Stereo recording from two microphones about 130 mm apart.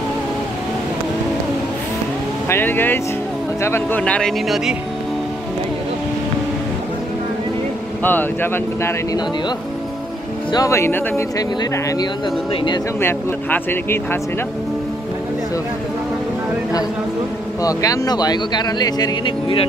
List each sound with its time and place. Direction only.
2.5 s speech: 15° left (ahead or behind)
4.0 s speech: 5° left (ahead or behind)
8.0 s speech: 15° left (ahead or behind)
10.5 s speech: 25° left (ahead or behind)
17.6 s speech: 30° left (ahead or behind)